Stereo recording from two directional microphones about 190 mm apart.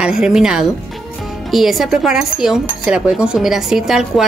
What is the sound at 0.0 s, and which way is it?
Cutlery, 5° right (ahead or behind).